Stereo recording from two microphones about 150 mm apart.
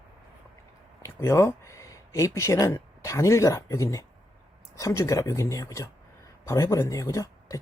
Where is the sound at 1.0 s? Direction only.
20° left (ahead or behind).